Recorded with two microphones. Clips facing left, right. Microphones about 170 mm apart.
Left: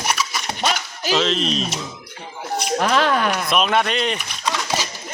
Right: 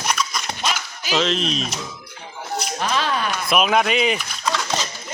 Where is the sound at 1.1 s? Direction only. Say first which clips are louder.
Left 1 dB; centre (ahead or behind).